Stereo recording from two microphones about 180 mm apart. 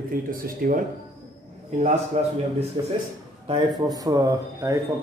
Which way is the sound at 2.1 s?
40° right (ahead or behind).